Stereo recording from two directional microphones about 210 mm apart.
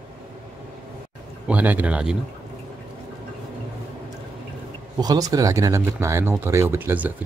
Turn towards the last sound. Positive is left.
turn(degrees=-10)  # may be behind; listen again after turning